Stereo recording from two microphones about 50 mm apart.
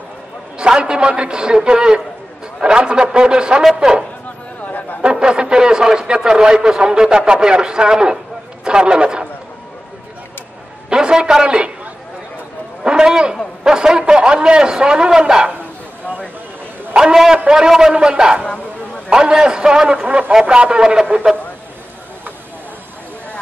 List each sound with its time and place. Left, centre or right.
0.6 s speech: centre
4.6 s a sound: left
5.1 s speech: centre
8.6 s a sound: centre
10.9 s a man's voice: centre
12.8 s a man's voice: centre
16.9 s a man's voice: centre